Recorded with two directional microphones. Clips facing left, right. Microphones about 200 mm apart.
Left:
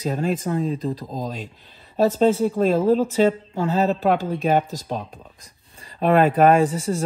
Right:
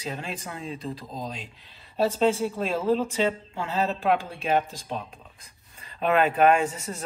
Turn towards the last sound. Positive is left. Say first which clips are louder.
# left 6 dB
turn(degrees=30)  # may be behind; listen again after turning